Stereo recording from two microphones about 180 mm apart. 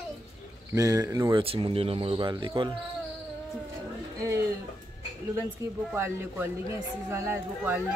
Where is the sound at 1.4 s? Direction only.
30° right (ahead or behind).